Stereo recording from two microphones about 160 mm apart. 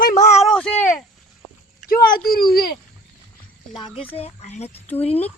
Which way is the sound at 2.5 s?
70° left (ahead or behind).